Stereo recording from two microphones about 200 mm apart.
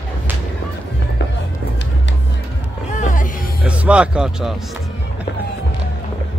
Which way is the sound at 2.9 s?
40° left (ahead or behind).